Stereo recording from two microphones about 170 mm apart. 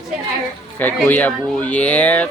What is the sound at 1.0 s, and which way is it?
Speech, 10° left (ahead or behind).